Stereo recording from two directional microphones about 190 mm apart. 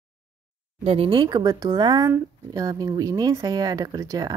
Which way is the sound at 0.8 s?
30° right (ahead or behind).